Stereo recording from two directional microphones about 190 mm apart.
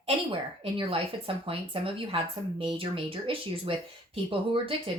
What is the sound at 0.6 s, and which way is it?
Speech, 30° right (ahead or behind).